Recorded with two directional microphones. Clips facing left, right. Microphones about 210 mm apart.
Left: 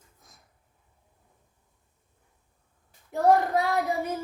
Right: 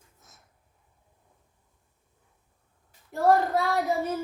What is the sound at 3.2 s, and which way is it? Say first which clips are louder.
Child singing: even; 15° left (ahead or behind).